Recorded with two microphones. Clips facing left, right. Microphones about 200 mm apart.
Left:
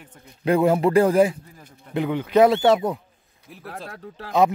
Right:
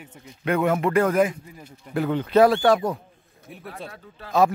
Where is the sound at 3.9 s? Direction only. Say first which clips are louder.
Left 5 dB; 65° left (ahead or behind).